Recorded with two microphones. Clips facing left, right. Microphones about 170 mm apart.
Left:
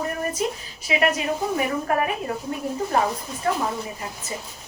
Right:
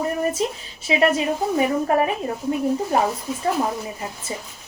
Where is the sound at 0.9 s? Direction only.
25° right (ahead or behind).